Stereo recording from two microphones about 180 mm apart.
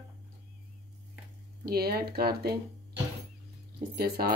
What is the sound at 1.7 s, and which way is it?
Speech, 60° right (ahead or behind).